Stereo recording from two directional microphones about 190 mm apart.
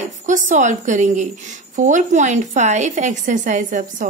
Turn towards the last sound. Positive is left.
turn(degrees=-45)  # may be behind; listen again after turning